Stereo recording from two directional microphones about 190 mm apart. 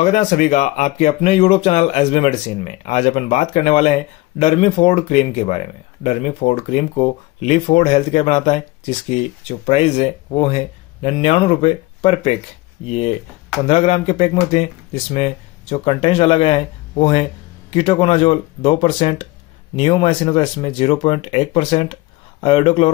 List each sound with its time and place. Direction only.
0.0 s speech: 35° left (ahead or behind)